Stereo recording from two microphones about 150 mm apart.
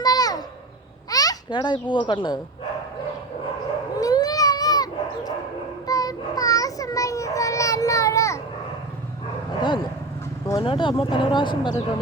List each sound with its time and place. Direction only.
0.0 s a sound: 25° left (ahead or behind)
1.1 s babbling: 25° left (ahead or behind)
1.9 s speech: 35° left (ahead or behind)
4.0 s dog: 25° left (ahead or behind)
5.9 s child singing: 25° left (ahead or behind)
9.6 s dog: 30° left (ahead or behind)
10.6 s speech: 35° left (ahead or behind)